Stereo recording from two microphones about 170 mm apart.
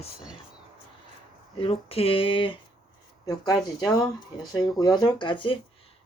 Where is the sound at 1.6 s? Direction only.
35° left (ahead or behind).